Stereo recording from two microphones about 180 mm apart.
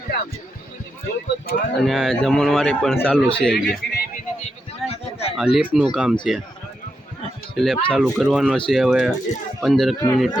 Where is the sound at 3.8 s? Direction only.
70° left (ahead or behind).